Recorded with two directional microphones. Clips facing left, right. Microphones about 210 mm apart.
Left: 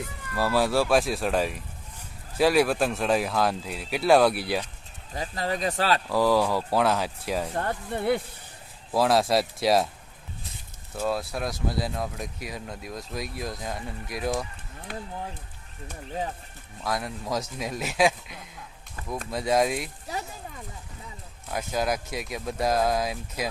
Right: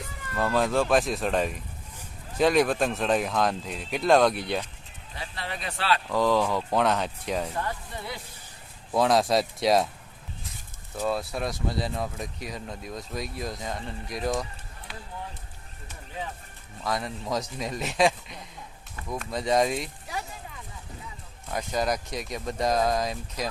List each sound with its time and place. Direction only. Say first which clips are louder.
0.3 s speech: left 1 dB; 10° left (ahead or behind)
5.1 s speech: left 7 dB; 40° left (ahead or behind)
6.1 s speech: left 1 dB; 10° left (ahead or behind)
7.5 s speech: left 4 dB; 50° left (ahead or behind)
8.9 s speech: even; 5° left (ahead or behind)
10.9 s speech: even; centre (ahead or behind)
14.9 s speech: left 8 dB; 50° left (ahead or behind)
16.8 s speech: even; centre (ahead or behind)
21.5 s speech: even; 5° left (ahead or behind)